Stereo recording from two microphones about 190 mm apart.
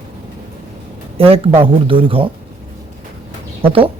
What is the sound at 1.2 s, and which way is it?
Speech, 30° right (ahead or behind).